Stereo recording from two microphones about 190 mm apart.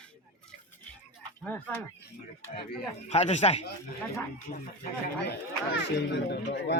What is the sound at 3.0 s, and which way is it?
Speech, 35° left (ahead or behind).